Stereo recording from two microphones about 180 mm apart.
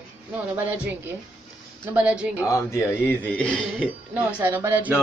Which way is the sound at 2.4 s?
15° left (ahead or behind).